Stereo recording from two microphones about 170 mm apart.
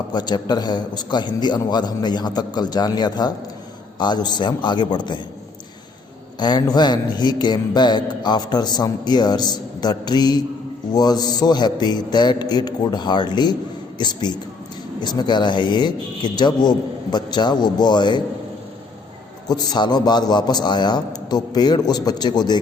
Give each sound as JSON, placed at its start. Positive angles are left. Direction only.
{"t": 0.1, "sound": "a man's voice", "side_deg": 25}
{"t": 6.4, "sound": "a man's voice", "side_deg": 25}
{"t": 19.5, "sound": "a man's voice", "side_deg": 25}